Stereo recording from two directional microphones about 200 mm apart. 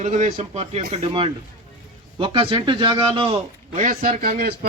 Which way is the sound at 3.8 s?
40° right (ahead or behind).